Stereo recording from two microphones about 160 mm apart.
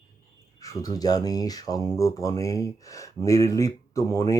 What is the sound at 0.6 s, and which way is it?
Speech, 20° left (ahead or behind).